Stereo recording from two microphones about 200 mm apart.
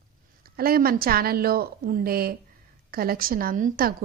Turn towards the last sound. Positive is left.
turn(degrees=-45)  # may be behind; listen again after turning